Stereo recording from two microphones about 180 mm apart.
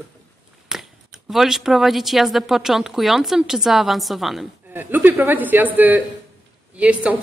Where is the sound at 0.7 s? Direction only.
Centre (ahead or behind).